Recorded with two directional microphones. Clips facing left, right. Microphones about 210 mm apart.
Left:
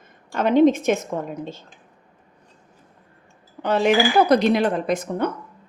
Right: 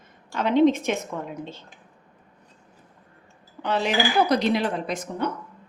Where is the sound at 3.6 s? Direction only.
50° left (ahead or behind).